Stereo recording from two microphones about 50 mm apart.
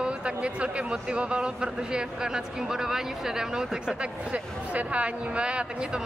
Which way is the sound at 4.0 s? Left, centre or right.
Right.